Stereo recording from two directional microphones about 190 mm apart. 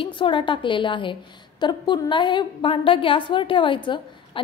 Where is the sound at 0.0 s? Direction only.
25° left (ahead or behind).